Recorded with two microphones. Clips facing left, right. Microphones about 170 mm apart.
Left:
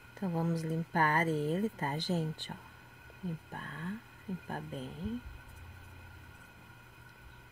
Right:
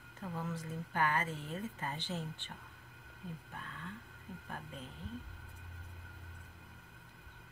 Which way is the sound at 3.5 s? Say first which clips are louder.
Left 6 dB; 40° left (ahead or behind).